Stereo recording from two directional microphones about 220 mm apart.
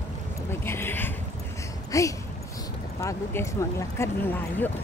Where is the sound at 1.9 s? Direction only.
15° left (ahead or behind).